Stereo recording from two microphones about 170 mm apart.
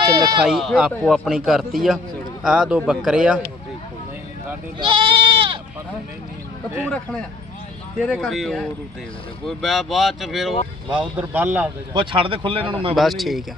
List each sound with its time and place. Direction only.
0.4 s a man's voice: centre (ahead or behind)
4.8 s goat: 30° right (ahead or behind)
6.9 s a man's voice: 5° left (ahead or behind); by 11.7 s 10° right (ahead or behind)
11.9 s speech: 30° right (ahead or behind)
13.0 s a man's voice: centre (ahead or behind)